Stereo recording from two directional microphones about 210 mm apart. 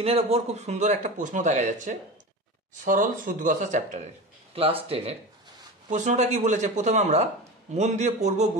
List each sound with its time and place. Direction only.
0.0 s a man's voice: 30° right (ahead or behind)